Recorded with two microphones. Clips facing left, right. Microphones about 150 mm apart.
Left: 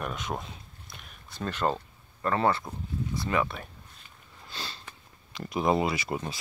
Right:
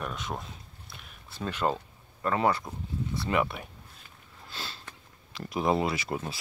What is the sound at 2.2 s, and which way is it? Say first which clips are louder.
Speech: even; 10° right (ahead or behind).